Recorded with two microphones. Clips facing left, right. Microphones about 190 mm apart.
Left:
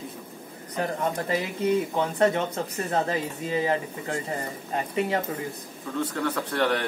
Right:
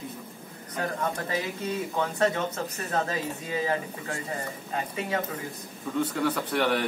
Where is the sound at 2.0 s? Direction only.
25° left (ahead or behind).